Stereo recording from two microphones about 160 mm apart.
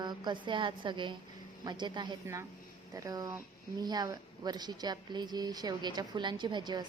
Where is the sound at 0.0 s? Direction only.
25° right (ahead or behind).